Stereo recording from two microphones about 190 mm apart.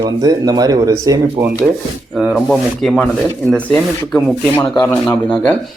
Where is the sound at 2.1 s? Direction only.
Centre (ahead or behind).